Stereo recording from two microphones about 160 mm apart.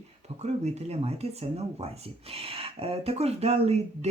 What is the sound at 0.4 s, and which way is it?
Speech, 45° right (ahead or behind).